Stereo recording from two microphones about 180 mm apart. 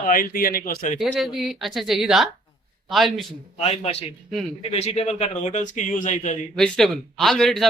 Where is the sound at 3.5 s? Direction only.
35° left (ahead or behind).